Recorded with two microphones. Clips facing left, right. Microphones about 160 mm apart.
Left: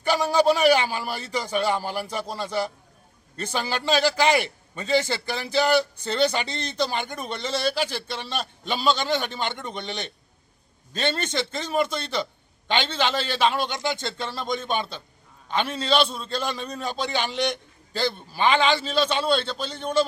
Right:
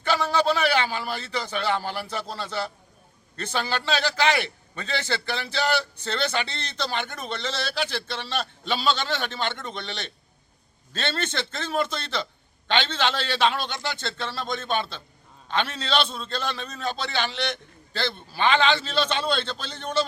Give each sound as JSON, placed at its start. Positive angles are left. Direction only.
{"t": 0.0, "sound": "a man's voice", "side_deg": 10}